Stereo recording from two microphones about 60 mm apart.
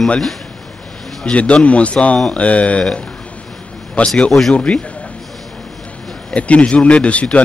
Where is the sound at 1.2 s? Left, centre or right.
Centre.